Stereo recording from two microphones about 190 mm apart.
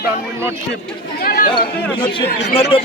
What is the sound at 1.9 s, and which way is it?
Speech, 25° left (ahead or behind).